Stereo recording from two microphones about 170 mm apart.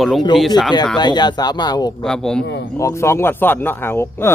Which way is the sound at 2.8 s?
15° left (ahead or behind).